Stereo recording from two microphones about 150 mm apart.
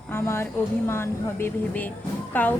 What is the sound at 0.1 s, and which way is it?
Speech, 15° left (ahead or behind).